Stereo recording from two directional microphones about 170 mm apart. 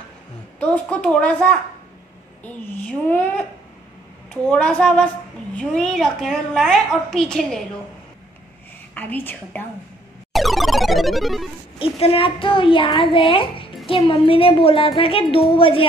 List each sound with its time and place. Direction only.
0.6 s a woman's voice: 10° left (ahead or behind)
4.3 s a woman's voice: 5° left (ahead or behind)
8.9 s a woman's voice: 10° left (ahead or behind)
10.3 s music: centre (ahead or behind)
11.8 s a woman's voice: 35° left (ahead or behind)